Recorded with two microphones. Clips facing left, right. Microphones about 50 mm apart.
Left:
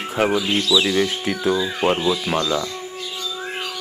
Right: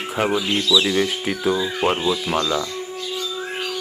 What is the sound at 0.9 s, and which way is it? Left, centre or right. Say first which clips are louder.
Speech: left 1 dB; centre.